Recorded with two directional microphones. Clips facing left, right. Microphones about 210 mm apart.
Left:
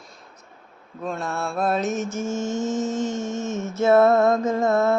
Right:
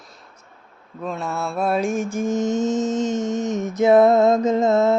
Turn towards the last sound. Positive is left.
turn(degrees=-20)  # may be behind; listen again after turning